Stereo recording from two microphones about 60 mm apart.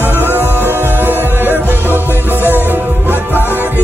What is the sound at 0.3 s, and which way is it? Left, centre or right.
Music, right.